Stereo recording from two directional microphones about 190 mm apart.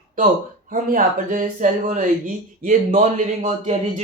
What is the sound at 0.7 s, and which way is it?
Speech, 45° right (ahead or behind).